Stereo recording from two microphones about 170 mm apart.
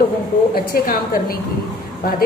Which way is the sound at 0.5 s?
60° left (ahead or behind).